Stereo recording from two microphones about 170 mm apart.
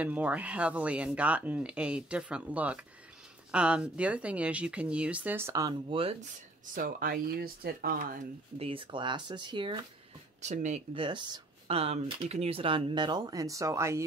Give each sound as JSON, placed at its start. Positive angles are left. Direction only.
{"t": 0.0, "sound": "speech", "side_deg": -10}
{"t": 5.9, "sound": "speech", "side_deg": -35}
{"t": 6.6, "sound": "speech", "side_deg": -50}
{"t": 8.5, "sound": "speech", "side_deg": -30}
{"t": 10.4, "sound": "speech", "side_deg": -45}
{"t": 11.0, "sound": "speech", "side_deg": -30}